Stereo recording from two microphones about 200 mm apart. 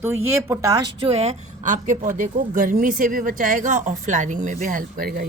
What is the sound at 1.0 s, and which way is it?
A woman's voice, 30° right (ahead or behind).